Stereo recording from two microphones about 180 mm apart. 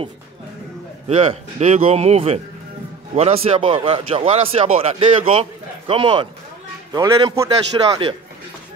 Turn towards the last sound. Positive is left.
turn(degrees=-20)  # may be behind; listen again after turning